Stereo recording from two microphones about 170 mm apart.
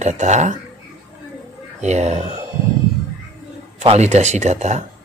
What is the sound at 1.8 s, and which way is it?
Speech, 40° right (ahead or behind).